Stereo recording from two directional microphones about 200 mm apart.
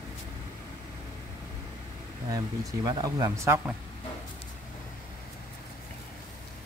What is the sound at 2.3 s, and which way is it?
Speech, 20° right (ahead or behind).